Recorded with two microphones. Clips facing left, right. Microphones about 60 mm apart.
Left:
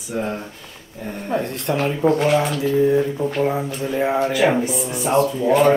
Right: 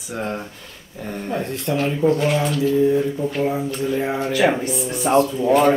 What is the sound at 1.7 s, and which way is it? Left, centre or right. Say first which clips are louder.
Speech: even; left.